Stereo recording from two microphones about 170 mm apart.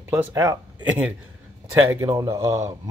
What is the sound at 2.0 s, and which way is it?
Speech, 20° right (ahead or behind).